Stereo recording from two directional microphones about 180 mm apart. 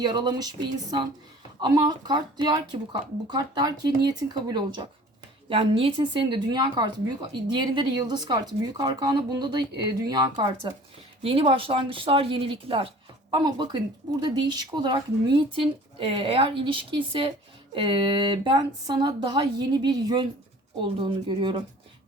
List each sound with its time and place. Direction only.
0.0 s speech: 25° right (ahead or behind)